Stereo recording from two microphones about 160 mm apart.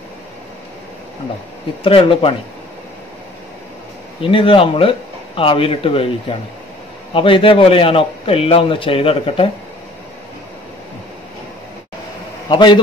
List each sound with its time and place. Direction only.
1.8 s a man's voice: 35° left (ahead or behind)
4.2 s a man's voice: 35° left (ahead or behind)
12.4 s a man's voice: 30° left (ahead or behind)